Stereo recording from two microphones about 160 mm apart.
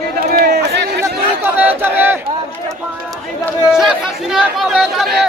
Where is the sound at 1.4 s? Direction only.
10° right (ahead or behind).